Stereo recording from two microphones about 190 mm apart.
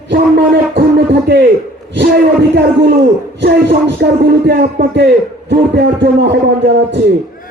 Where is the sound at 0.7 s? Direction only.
65° right (ahead or behind).